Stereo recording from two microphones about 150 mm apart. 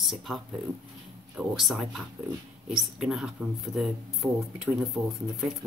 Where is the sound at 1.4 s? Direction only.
Centre (ahead or behind).